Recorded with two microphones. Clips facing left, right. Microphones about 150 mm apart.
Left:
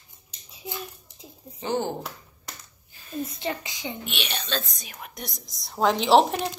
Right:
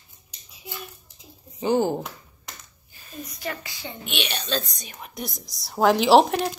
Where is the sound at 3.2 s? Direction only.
25° left (ahead or behind).